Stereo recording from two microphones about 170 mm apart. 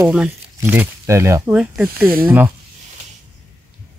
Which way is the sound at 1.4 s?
5° right (ahead or behind).